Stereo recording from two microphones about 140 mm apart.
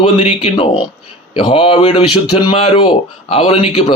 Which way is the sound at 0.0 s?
40° left (ahead or behind).